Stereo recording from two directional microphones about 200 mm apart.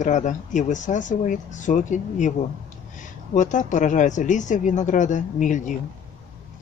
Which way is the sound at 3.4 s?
40° left (ahead or behind).